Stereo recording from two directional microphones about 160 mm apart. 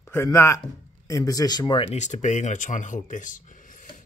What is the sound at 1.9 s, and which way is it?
Speech, 50° left (ahead or behind).